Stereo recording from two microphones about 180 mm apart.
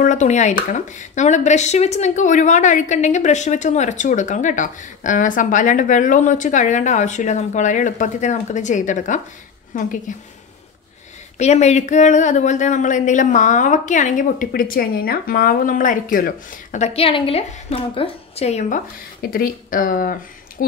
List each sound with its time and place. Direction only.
0.0 s a woman's voice: 40° left (ahead or behind)
11.3 s a woman's voice: 40° left (ahead or behind)
16.8 s a woman's voice: 30° left (ahead or behind)
19.3 s a woman's voice: 50° left (ahead or behind)